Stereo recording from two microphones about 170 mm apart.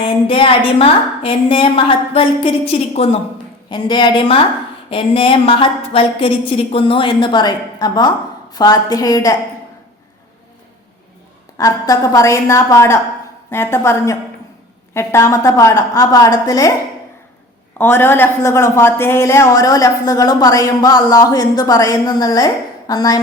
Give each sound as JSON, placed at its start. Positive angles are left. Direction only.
{"t": 0.0, "sound": "a woman's voice", "side_deg": 30}
{"t": 3.7, "sound": "a woman's voice", "side_deg": 25}
{"t": 11.5, "sound": "a woman's voice", "side_deg": 20}
{"t": 17.7, "sound": "a woman's voice", "side_deg": 10}